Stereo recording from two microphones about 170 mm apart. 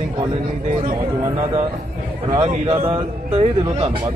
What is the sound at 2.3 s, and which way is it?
A man's voice, 30° right (ahead or behind).